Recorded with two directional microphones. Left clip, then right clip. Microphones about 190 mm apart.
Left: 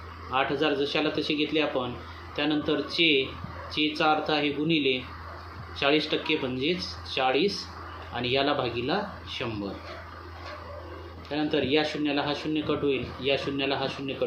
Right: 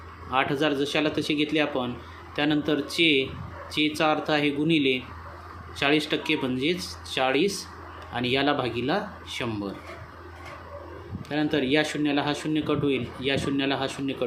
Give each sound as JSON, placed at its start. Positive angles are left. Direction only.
{"t": 0.3, "sound": "speech", "side_deg": -35}
{"t": 11.3, "sound": "speech", "side_deg": -35}